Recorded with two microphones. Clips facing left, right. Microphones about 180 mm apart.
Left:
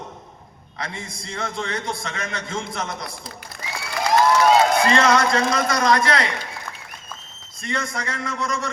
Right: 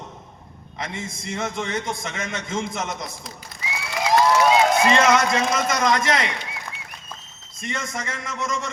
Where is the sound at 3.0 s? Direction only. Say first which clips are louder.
Even; 60° left (ahead or behind).